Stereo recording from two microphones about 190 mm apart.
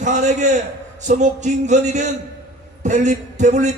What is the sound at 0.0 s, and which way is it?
A man's voice, 40° right (ahead or behind).